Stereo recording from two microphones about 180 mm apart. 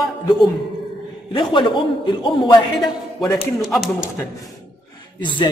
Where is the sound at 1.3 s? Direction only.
25° left (ahead or behind).